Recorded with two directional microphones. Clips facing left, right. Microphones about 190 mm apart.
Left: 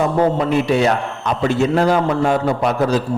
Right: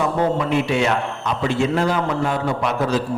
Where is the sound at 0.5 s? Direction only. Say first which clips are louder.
Left 3 dB; 40° left (ahead or behind).